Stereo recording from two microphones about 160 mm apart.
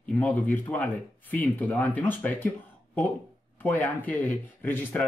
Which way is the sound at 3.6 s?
10° left (ahead or behind).